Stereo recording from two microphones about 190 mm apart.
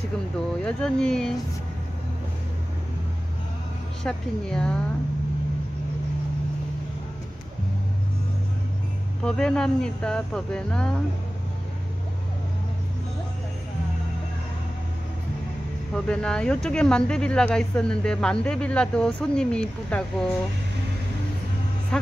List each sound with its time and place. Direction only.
0.7 s speech: 5° left (ahead or behind)
4.0 s speech: 5° left (ahead or behind)
9.2 s speech: 5° left (ahead or behind)
15.9 s speech: 5° left (ahead or behind)